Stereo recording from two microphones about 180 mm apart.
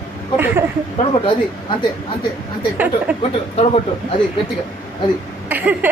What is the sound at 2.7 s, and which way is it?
Speech, 10° right (ahead or behind).